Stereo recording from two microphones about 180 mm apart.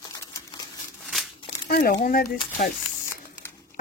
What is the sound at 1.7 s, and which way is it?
Speech, 55° left (ahead or behind).